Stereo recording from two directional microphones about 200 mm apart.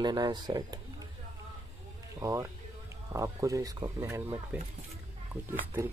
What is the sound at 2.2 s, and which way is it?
Speech, 15° right (ahead or behind).